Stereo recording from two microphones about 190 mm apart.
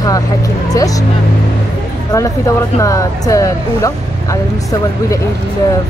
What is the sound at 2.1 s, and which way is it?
Speech, 15° left (ahead or behind).